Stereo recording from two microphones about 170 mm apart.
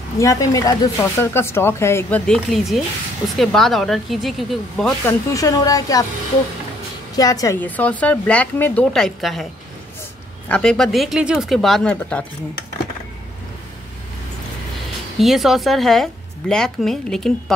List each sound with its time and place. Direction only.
0.2 s speech: 20° left (ahead or behind); by 4.9 s centre (ahead or behind)
5.0 s a woman's voice: 20° left (ahead or behind)
7.2 s speech: 20° left (ahead or behind); by 9.5 s centre (ahead or behind)
10.5 s speech: 5° left (ahead or behind)
15.1 s speech: centre (ahead or behind)